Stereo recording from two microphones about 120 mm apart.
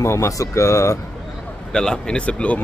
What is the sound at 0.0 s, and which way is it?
Speech, 25° left (ahead or behind).